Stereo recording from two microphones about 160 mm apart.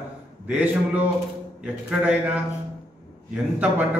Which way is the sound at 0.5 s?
10° right (ahead or behind).